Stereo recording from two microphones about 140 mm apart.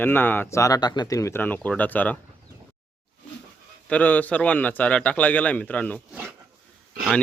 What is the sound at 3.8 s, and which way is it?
Speech, 10° left (ahead or behind).